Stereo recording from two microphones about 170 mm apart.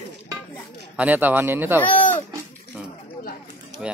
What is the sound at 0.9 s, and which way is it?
Speech, 10° right (ahead or behind).